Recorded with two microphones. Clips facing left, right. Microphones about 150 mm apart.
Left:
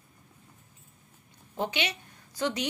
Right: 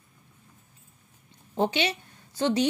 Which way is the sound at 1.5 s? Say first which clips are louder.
Right 6 dB; 30° right (ahead or behind).